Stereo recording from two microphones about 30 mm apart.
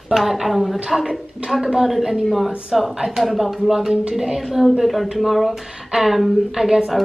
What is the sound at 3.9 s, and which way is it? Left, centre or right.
Speech, right.